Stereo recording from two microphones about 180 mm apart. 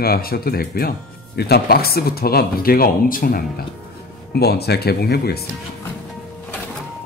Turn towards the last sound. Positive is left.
turn(degrees=60)  # may be behind; listen again after turning